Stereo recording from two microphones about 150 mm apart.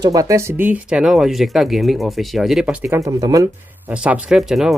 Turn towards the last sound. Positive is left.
turn(degrees=0)  # may be behind; listen again after turning